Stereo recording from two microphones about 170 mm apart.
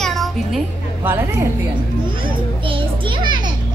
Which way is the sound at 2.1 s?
30° right (ahead or behind).